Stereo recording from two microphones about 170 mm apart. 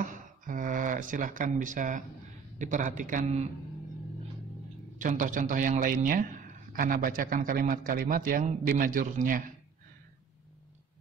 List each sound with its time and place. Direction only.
0.0 s a sound: 50° right (ahead or behind)
2.6 s a man's voice: 45° right (ahead or behind)
4.9 s a man's voice: 50° right (ahead or behind)